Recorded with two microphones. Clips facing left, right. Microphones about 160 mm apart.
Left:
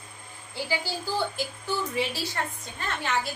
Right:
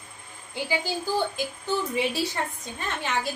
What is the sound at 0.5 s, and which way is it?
A woman's voice, 15° right (ahead or behind).